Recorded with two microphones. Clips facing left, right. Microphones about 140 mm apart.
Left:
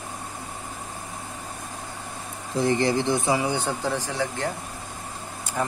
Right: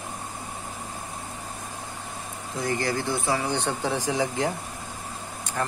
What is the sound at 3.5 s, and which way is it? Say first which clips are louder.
Speech: even; centre (ahead or behind).